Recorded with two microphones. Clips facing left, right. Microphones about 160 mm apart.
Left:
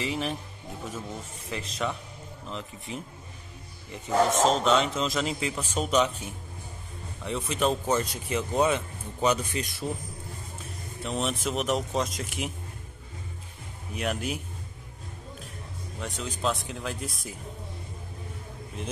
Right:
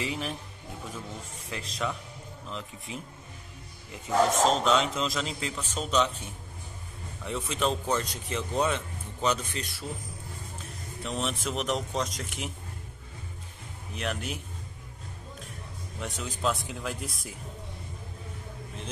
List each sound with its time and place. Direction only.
0.0 s a man's voice: centre (ahead or behind)
1.5 s a man's voice: centre (ahead or behind)
3.9 s a man's voice: centre (ahead or behind)
7.2 s speech: centre (ahead or behind)
11.0 s a man's voice: centre (ahead or behind)
13.9 s speech: 10° left (ahead or behind)
16.0 s a man's voice: centre (ahead or behind)